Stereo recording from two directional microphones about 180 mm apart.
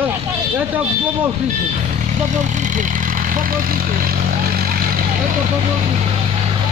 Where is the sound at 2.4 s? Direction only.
45° right (ahead or behind).